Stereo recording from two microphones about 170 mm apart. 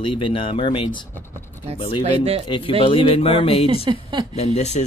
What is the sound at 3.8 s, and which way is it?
Speech, 25° right (ahead or behind).